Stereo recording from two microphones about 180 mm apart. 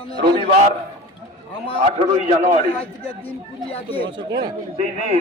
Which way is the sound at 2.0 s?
40° right (ahead or behind).